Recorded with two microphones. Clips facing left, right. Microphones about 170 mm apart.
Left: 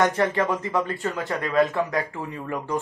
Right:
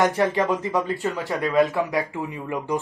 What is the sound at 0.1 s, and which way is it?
Speech, 15° right (ahead or behind).